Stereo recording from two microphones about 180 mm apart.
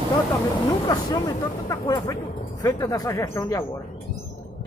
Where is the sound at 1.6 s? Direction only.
20° left (ahead or behind).